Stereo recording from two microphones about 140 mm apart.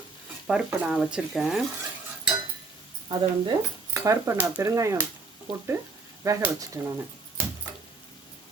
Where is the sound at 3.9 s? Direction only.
20° right (ahead or behind).